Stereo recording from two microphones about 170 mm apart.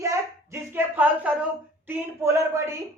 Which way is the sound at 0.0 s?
15° right (ahead or behind).